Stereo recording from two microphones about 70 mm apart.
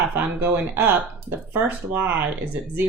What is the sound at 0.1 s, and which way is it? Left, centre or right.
Speech, right.